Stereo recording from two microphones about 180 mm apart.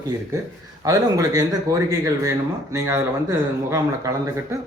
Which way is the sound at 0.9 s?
20° right (ahead or behind).